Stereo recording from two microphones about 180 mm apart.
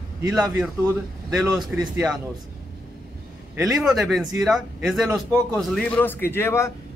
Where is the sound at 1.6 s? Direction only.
20° right (ahead or behind).